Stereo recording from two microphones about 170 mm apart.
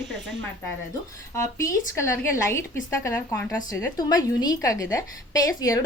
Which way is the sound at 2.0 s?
15° left (ahead or behind).